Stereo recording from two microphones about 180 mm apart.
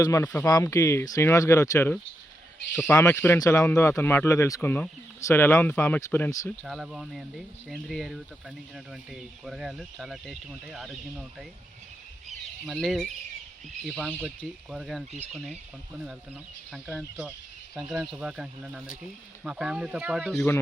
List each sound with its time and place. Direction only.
0.0 s speech: 15° left (ahead or behind); by 11.4 s centre (ahead or behind)
12.6 s speech: centre (ahead or behind)
16.9 s speech: centre (ahead or behind)